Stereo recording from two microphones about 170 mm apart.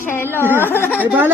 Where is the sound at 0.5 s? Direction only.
15° left (ahead or behind).